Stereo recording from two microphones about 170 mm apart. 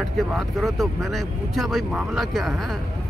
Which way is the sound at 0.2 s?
Centre (ahead or behind).